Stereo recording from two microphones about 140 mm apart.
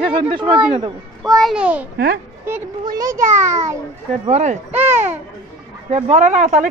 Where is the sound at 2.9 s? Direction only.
25° right (ahead or behind).